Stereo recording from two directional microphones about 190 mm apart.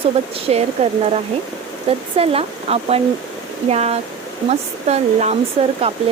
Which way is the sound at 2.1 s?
30° right (ahead or behind).